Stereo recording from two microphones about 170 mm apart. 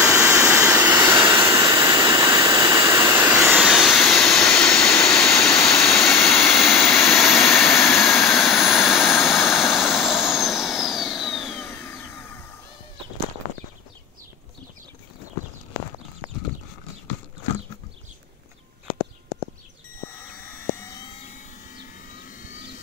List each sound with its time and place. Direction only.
0.0 s jet engine: 20° right (ahead or behind); by 11.6 s centre (ahead or behind)
11.6 s vehicle: 15° left (ahead or behind)
20.7 s vehicle: 15° left (ahead or behind)
21.7 s vehicle: 50° left (ahead or behind)